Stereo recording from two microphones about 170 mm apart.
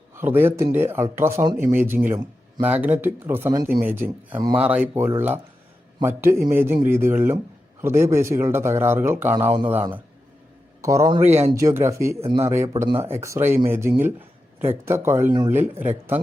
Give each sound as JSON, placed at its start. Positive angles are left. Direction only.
{"t": 0.2, "sound": "speech", "side_deg": -10}
{"t": 10.8, "sound": "a man's voice", "side_deg": -20}
{"t": 12.2, "sound": "speech", "side_deg": -35}
{"t": 12.5, "sound": "speech", "side_deg": -15}